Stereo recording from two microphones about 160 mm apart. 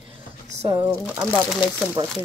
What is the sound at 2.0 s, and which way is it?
Speech, 25° right (ahead or behind).